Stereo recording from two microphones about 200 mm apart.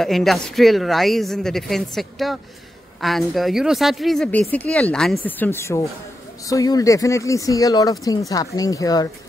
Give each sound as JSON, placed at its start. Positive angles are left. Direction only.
{"t": 0.0, "sound": "speech", "side_deg": 0}